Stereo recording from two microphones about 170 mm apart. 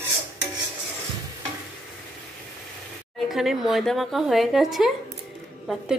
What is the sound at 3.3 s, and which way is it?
Speech, centre (ahead or behind).